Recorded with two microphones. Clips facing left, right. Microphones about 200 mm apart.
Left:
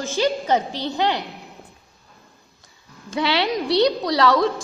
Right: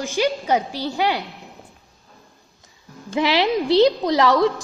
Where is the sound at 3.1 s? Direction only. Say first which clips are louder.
Right 3 dB; 20° right (ahead or behind).